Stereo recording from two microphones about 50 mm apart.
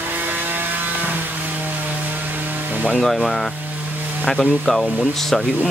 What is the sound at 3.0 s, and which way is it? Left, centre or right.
Speech, centre.